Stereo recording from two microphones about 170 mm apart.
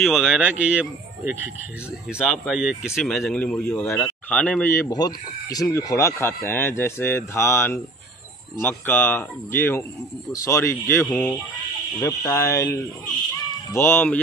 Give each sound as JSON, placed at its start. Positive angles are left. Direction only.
{"t": 0.0, "sound": "speech", "side_deg": -5}
{"t": 11.1, "sound": "speech", "side_deg": 5}
{"t": 12.0, "sound": "speech", "side_deg": 15}